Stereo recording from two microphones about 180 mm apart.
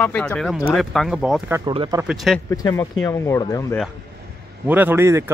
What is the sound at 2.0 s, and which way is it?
Speech, centre (ahead or behind).